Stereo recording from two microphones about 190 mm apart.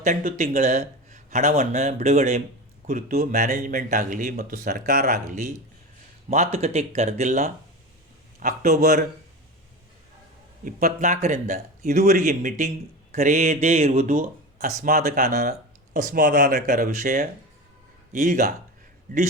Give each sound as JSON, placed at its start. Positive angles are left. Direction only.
{"t": 0.0, "sound": "speech", "side_deg": -40}
{"t": 10.6, "sound": "speech", "side_deg": -50}
{"t": 14.6, "sound": "speech", "side_deg": -50}